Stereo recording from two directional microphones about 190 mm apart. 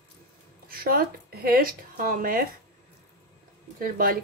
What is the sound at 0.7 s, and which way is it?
Speech, 50° right (ahead or behind).